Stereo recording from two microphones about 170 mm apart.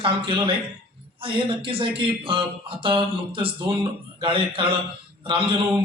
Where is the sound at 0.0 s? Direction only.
30° right (ahead or behind).